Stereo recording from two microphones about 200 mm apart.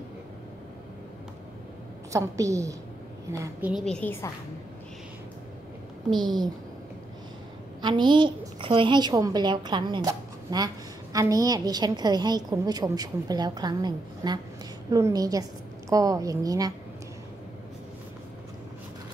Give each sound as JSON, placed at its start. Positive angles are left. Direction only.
{"t": 2.1, "sound": "a woman's voice", "side_deg": -15}
{"t": 3.7, "sound": "a woman's voice", "side_deg": 5}
{"t": 6.0, "sound": "a woman's voice", "side_deg": -20}
{"t": 7.8, "sound": "a woman's voice", "side_deg": -25}